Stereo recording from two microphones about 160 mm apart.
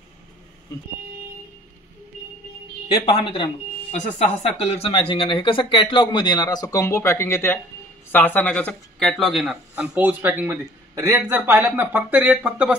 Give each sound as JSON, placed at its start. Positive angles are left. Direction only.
{"t": 2.9, "sound": "speech", "side_deg": 30}
{"t": 3.9, "sound": "speech", "side_deg": 45}